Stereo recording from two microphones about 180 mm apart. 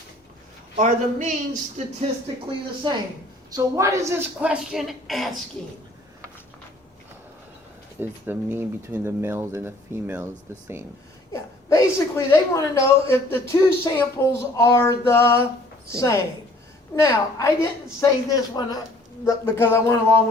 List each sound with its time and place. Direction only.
0.8 s a man's voice: 45° right (ahead or behind)
2.8 s a woman's voice: 25° right (ahead or behind)
4.4 s a woman's voice: 5° right (ahead or behind)
7.9 s speech: 10° right (ahead or behind)
11.7 s speech: 15° left (ahead or behind)